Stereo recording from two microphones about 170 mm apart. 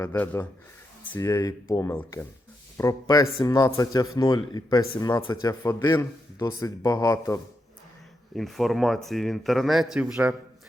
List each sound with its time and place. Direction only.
0.0 s speech: 15° left (ahead or behind)
8.4 s speech: centre (ahead or behind)